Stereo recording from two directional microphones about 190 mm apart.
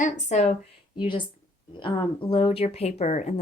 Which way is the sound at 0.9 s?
25° left (ahead or behind).